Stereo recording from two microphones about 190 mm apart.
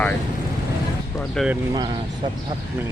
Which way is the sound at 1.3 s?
Centre (ahead or behind).